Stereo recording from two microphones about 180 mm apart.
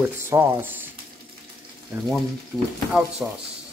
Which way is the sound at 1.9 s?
10° right (ahead or behind).